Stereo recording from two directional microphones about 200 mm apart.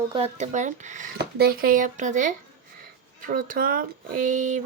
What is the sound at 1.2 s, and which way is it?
Speech, 50° right (ahead or behind).